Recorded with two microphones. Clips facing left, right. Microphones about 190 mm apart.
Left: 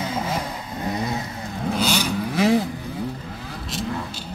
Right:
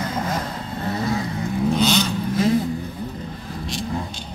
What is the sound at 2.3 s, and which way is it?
Vehicle, 80° left.